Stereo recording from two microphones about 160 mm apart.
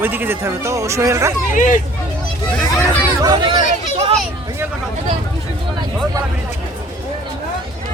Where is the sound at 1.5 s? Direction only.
55° left (ahead or behind).